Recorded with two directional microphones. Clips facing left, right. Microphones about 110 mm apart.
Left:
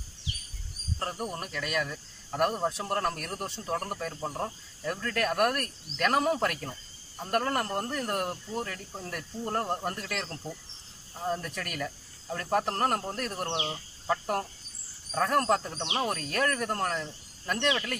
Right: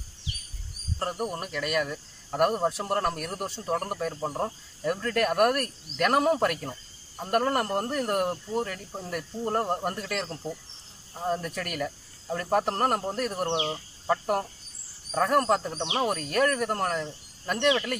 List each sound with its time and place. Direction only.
0.9 s speech: 10° right (ahead or behind)